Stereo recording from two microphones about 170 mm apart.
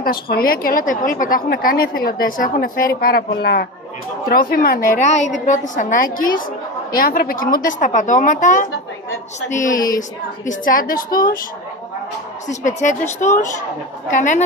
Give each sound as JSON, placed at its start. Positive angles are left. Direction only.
{"t": 0.0, "sound": "a woman's voice", "side_deg": 60}
{"t": 4.3, "sound": "a woman's voice", "side_deg": 60}
{"t": 5.0, "sound": "a woman's voice", "side_deg": 45}
{"t": 6.9, "sound": "a woman's voice", "side_deg": 60}
{"t": 12.4, "sound": "a woman's voice", "side_deg": 50}